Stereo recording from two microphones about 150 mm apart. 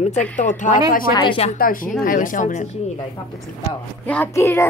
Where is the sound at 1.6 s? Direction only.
70° left (ahead or behind).